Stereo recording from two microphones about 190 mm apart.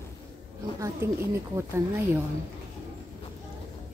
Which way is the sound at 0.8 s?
15° right (ahead or behind).